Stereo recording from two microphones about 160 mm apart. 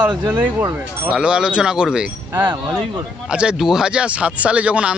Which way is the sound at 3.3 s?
5° right (ahead or behind).